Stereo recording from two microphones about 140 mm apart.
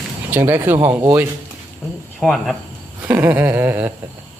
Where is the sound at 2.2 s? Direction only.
Centre (ahead or behind).